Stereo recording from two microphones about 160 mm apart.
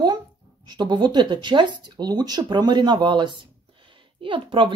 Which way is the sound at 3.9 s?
30° right (ahead or behind).